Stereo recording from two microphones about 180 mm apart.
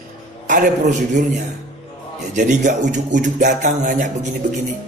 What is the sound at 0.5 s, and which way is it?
Speech, 45° right (ahead or behind).